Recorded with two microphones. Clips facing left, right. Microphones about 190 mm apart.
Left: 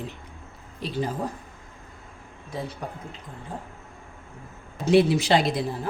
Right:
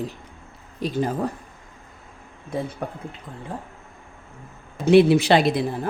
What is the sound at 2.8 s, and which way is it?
Speech, 55° right (ahead or behind).